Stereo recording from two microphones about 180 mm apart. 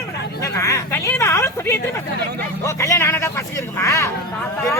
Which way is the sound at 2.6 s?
15° left (ahead or behind).